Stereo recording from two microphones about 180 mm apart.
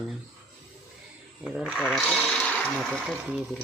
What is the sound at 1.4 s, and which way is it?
Speech, 5° right (ahead or behind).